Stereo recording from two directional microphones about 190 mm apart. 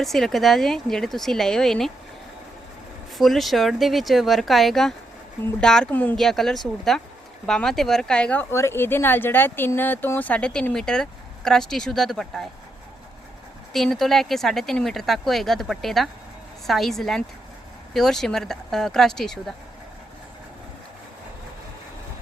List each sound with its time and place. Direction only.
0.0 s speech: centre (ahead or behind)
3.2 s speech: centre (ahead or behind)
13.7 s speech: centre (ahead or behind)